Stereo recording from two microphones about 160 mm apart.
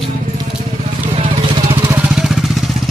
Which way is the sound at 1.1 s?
35° right (ahead or behind).